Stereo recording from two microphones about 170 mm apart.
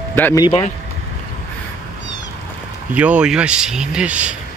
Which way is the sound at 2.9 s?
10° right (ahead or behind).